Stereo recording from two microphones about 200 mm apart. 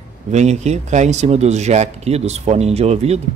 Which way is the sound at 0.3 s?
35° right (ahead or behind).